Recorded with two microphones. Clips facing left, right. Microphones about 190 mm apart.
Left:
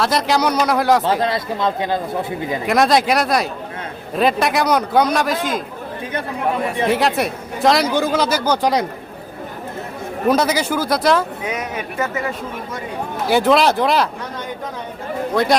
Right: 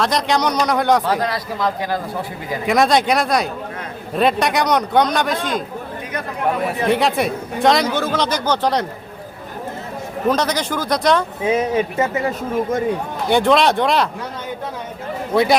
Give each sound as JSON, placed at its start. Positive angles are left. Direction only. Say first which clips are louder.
{"t": 0.0, "sound": "speech", "louder": "left 1 dB", "side_deg": 5}
{"t": 1.2, "sound": "speech", "louder": "left 2 dB", "side_deg": 25}
{"t": 2.6, "sound": "speech", "louder": "even", "side_deg": 0}
{"t": 6.8, "sound": "speech", "louder": "right 1 dB", "side_deg": 0}
{"t": 7.9, "sound": "speech", "louder": "left 2 dB", "side_deg": 15}
{"t": 10.2, "sound": "speech", "louder": "left 2 dB", "side_deg": 10}
{"t": 11.4, "sound": "speech", "louder": "right 7 dB", "side_deg": -30}
{"t": 13.2, "sound": "speech", "louder": "even", "side_deg": 5}
{"t": 15.3, "sound": "speech", "louder": "right 3 dB", "side_deg": -5}